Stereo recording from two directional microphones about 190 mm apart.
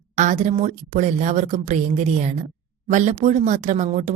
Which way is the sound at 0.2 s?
40° right (ahead or behind).